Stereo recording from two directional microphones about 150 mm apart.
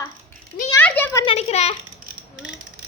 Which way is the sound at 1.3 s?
45° left (ahead or behind).